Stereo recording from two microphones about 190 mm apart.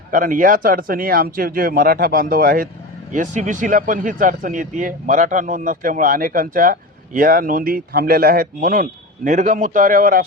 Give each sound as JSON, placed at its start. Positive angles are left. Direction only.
{"t": 0.1, "sound": "speech", "side_deg": -45}